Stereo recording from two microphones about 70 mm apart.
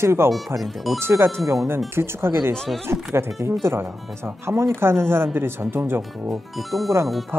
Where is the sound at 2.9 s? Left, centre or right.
Right.